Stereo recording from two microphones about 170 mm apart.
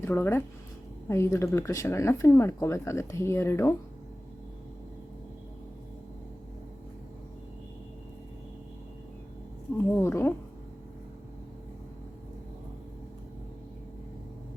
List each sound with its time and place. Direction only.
0.0 s speech: 15° left (ahead or behind)
9.7 s speech: 15° left (ahead or behind)